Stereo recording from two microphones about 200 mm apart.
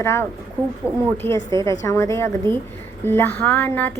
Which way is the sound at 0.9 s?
5° right (ahead or behind).